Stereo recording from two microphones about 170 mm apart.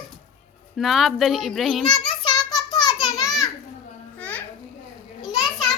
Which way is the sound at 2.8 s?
20° left (ahead or behind).